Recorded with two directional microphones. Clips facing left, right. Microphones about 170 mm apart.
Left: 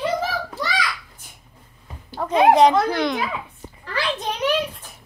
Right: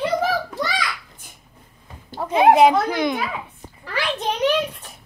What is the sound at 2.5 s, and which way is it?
Speech, 10° right (ahead or behind).